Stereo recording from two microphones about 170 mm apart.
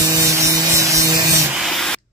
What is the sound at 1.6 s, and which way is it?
Spray, centre (ahead or behind).